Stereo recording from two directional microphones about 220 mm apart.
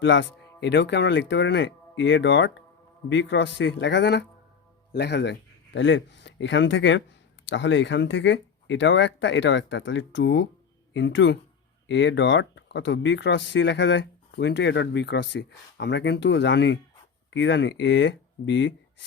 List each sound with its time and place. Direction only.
0.0 s speech: 55° left (ahead or behind)